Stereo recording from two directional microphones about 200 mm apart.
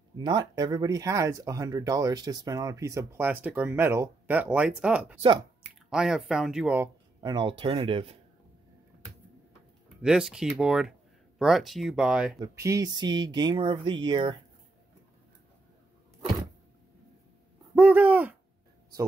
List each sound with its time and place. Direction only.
0.2 s speech: 20° right (ahead or behind)
10.0 s speech: 5° right (ahead or behind)
12.4 s speech: 15° right (ahead or behind)
17.7 s owl: 10° right (ahead or behind)